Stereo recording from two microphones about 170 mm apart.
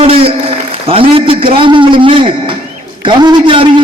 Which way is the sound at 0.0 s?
35° right (ahead or behind).